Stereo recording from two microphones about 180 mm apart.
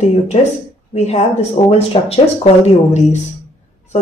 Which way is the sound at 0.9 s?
35° left (ahead or behind).